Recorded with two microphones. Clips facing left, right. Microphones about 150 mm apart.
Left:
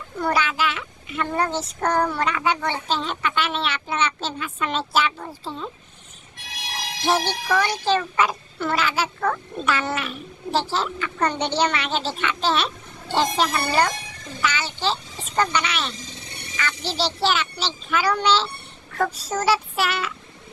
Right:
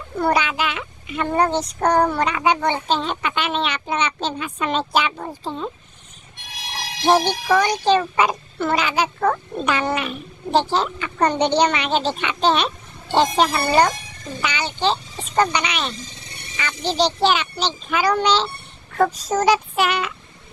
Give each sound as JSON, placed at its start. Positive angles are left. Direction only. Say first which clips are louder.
{"t": 0.2, "sound": "a child's voice", "louder": "right 3 dB", "side_deg": -15}
{"t": 7.0, "sound": "a child's voice", "louder": "right 5 dB", "side_deg": -15}
{"t": 14.4, "sound": "a sound", "louder": "right 3 dB", "side_deg": -20}
{"t": 16.5, "sound": "a child's voice", "louder": "right 5 dB", "side_deg": -15}